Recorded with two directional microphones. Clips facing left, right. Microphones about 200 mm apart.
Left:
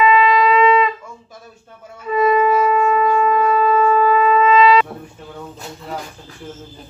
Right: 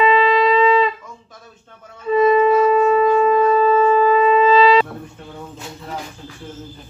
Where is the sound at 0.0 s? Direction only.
30° right (ahead or behind).